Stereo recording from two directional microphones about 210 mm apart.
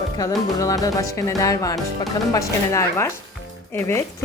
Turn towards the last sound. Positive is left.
turn(degrees=10)  # may be behind; listen again after turning